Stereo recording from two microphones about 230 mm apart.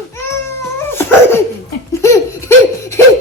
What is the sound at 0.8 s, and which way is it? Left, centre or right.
Crying, centre.